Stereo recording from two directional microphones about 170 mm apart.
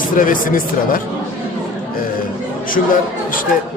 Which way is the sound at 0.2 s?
55° left (ahead or behind).